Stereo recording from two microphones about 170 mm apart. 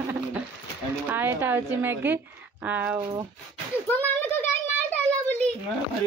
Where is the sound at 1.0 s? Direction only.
10° right (ahead or behind).